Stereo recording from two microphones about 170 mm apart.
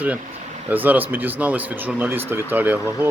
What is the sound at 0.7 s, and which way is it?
Speech, 10° right (ahead or behind).